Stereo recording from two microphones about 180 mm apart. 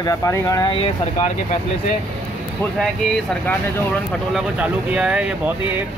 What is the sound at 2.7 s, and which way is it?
Speech, centre (ahead or behind).